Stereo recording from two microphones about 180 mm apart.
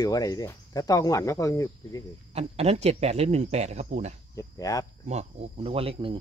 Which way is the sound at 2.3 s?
35° right (ahead or behind).